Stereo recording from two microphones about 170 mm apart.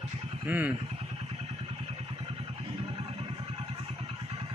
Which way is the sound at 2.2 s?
35° right (ahead or behind).